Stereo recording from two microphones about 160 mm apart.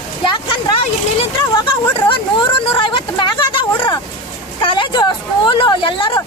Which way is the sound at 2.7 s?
30° left (ahead or behind).